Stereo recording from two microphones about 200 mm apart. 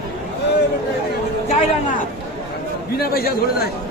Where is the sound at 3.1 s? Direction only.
50° left (ahead or behind).